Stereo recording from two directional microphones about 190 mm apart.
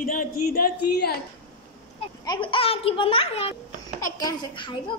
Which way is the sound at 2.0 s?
25° left (ahead or behind).